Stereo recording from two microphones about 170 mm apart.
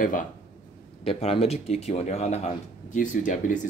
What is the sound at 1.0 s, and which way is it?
Speech, 35° left (ahead or behind).